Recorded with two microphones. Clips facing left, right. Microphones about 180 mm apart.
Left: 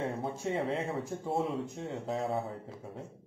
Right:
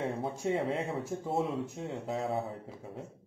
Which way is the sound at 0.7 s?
30° left (ahead or behind).